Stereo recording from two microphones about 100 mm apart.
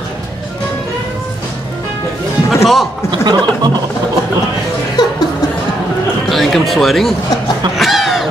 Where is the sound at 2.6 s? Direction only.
Centre (ahead or behind).